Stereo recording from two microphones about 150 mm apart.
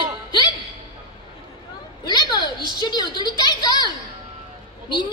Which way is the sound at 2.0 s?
30° left (ahead or behind).